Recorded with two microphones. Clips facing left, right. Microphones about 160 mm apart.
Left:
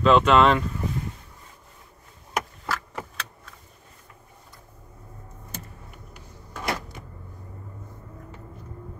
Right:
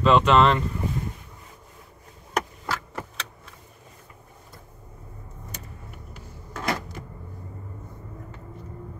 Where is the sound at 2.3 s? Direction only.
5° left (ahead or behind).